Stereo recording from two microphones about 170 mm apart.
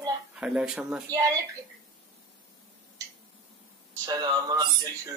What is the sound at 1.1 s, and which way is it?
Speech, 20° right (ahead or behind).